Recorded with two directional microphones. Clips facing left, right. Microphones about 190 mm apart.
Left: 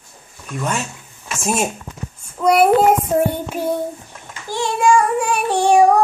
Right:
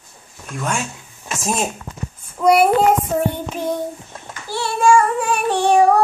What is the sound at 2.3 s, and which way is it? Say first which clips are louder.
Child singing: left 1 dB; centre (ahead or behind).